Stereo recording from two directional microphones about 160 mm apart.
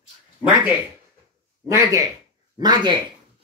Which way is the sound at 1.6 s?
20° right (ahead or behind).